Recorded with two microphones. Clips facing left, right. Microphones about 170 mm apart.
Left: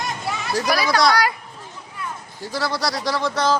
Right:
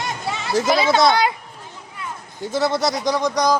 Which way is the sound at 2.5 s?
20° right (ahead or behind).